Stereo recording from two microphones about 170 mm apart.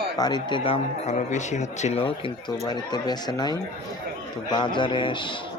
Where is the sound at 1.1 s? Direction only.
45° left (ahead or behind); by 5.3 s 30° left (ahead or behind).